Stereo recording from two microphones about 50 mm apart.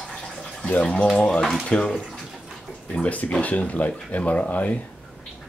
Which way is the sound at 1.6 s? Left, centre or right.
Centre.